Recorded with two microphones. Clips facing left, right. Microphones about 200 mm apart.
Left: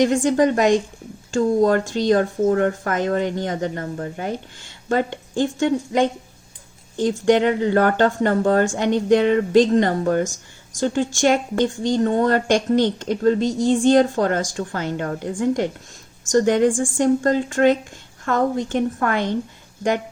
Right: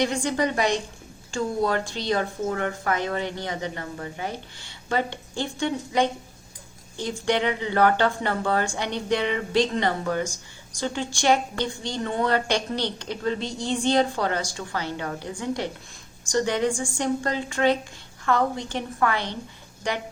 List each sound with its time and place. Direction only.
0.0 s speech: 45° left (ahead or behind)